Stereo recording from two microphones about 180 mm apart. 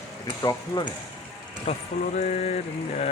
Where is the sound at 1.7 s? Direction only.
35° left (ahead or behind).